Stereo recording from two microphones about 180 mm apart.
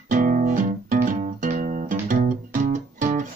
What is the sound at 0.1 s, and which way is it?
Music, 50° right (ahead or behind).